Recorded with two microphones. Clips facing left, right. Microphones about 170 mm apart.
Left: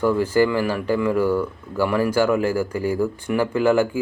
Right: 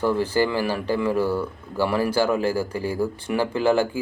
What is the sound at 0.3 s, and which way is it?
Speech, 30° right (ahead or behind).